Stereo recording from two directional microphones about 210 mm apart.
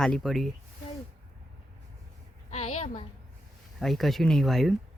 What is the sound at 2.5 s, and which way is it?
Speech, 30° left (ahead or behind).